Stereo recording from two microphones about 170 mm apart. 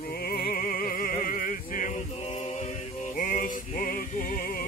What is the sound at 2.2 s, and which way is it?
Mantra, 40° left (ahead or behind).